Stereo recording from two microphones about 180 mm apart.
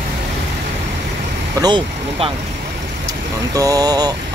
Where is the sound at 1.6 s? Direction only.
30° right (ahead or behind).